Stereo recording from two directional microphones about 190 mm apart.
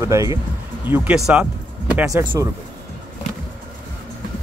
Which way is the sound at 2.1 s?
15° right (ahead or behind).